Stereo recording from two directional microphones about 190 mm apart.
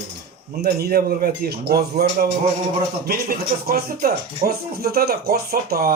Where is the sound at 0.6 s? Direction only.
55° right (ahead or behind).